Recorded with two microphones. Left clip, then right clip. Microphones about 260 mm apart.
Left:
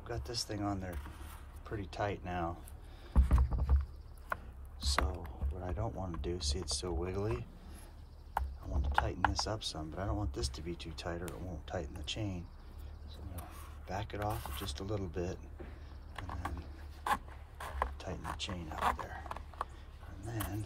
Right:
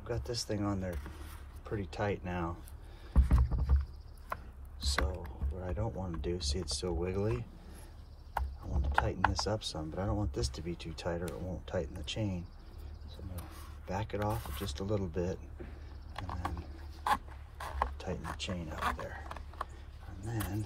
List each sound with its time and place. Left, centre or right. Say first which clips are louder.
0.0 s speech: right 2 dB; centre
3.1 s boat: right 1 dB; centre
4.3 s speech: left 1 dB; centre
16.3 s a sound: right 3 dB; centre
18.9 s dog: even; centre
20.2 s speech: right 2 dB; centre